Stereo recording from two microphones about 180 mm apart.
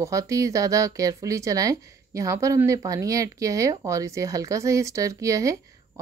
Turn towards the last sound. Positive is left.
turn(degrees=-20)  # may be behind; listen again after turning